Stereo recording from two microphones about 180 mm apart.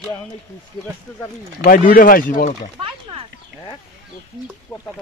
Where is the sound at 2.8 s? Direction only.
30° right (ahead or behind).